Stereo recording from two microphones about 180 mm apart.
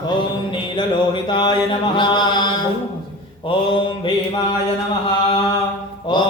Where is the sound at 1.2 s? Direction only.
25° left (ahead or behind).